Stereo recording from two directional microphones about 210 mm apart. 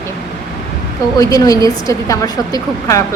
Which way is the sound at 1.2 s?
15° left (ahead or behind).